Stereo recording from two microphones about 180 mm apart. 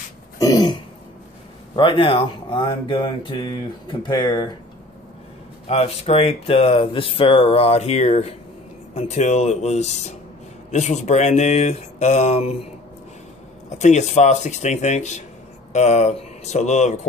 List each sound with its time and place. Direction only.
0.4 s throat clearing: 20° left (ahead or behind)
1.8 s speech: 30° left (ahead or behind)
5.7 s speech: 35° left (ahead or behind)
13.7 s speech: 40° left (ahead or behind)